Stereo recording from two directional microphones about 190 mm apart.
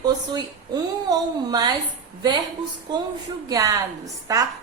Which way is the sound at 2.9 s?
25° right (ahead or behind).